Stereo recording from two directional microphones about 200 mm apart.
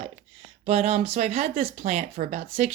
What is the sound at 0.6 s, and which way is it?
A woman's voice, 30° right (ahead or behind).